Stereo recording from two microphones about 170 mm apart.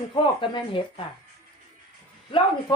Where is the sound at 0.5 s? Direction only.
30° left (ahead or behind).